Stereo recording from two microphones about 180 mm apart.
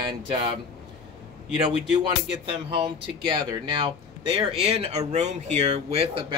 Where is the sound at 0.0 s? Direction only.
30° right (ahead or behind).